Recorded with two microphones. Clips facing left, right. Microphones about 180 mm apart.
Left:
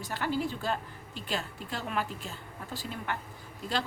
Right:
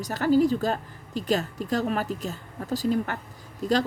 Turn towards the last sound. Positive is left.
turn(degrees=-40)  # may be behind; listen again after turning